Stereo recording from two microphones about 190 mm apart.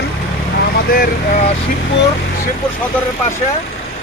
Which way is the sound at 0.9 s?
45° left (ahead or behind).